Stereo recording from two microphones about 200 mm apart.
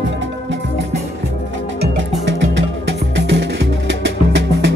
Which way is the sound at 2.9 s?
65° right (ahead or behind).